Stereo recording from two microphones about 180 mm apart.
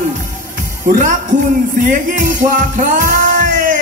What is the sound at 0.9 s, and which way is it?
Music, 45° right (ahead or behind).